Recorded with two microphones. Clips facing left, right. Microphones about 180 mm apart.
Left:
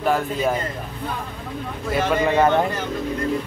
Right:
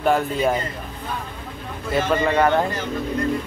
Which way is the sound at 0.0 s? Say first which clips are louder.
Right 1 dB; centre (ahead or behind).